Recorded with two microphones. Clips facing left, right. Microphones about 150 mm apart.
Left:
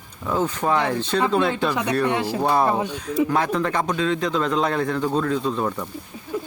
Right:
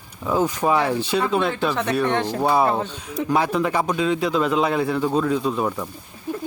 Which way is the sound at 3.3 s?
10° right (ahead or behind).